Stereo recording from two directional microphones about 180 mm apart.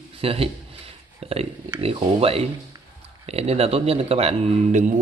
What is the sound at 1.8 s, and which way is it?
Speech, 35° right (ahead or behind).